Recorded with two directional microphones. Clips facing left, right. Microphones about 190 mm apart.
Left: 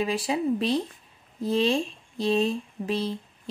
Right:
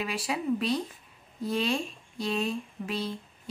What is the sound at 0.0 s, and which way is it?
A woman's voice, 30° left (ahead or behind).